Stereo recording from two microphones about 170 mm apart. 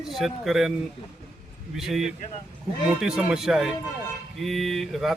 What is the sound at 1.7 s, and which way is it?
A man's voice, centre (ahead or behind).